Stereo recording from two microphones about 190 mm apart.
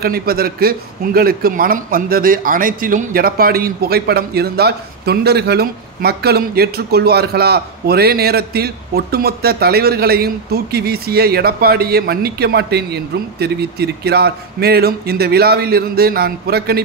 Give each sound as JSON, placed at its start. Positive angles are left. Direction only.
{"t": 0.0, "sound": "a man's voice", "side_deg": -50}